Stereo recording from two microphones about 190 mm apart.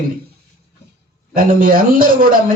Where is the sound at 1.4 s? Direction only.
50° right (ahead or behind).